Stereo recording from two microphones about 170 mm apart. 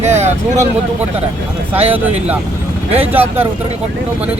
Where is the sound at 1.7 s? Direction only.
10° right (ahead or behind).